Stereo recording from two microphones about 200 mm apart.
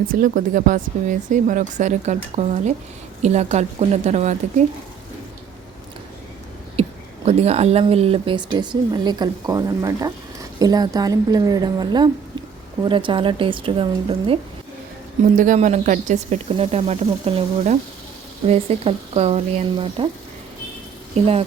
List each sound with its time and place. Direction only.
0.1 s speech: 45° right (ahead or behind)
6.8 s a sound: 30° right (ahead or behind)
7.3 s speech: 30° right (ahead or behind)
15.4 s speech: 40° right (ahead or behind)
21.2 s speech: 30° right (ahead or behind)